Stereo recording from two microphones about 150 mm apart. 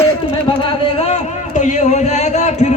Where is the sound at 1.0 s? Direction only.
50° left (ahead or behind).